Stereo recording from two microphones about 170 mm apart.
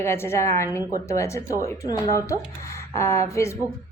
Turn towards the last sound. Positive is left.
turn(degrees=15)  # may be behind; listen again after turning